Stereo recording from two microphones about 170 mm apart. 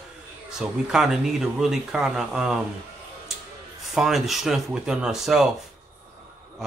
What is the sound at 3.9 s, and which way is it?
Speech, centre (ahead or behind).